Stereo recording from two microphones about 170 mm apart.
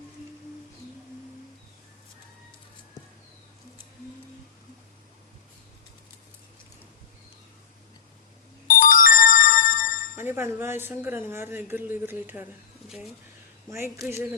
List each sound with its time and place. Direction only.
8.6 s ringtone: 55° left (ahead or behind)
10.2 s speech: 15° right (ahead or behind)
13.7 s speech: 15° right (ahead or behind)